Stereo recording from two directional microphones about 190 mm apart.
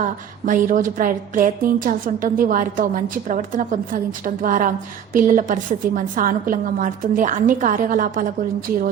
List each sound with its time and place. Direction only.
0.0 s a woman's voice: 40° right (ahead or behind)